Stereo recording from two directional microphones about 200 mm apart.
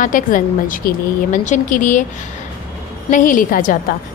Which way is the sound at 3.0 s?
40° left (ahead or behind).